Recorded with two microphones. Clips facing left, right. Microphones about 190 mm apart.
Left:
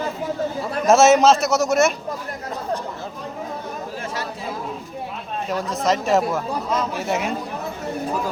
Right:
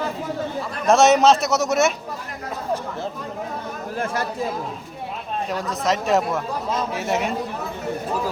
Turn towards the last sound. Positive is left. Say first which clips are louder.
# even
turn(degrees=0)  # may be behind; listen again after turning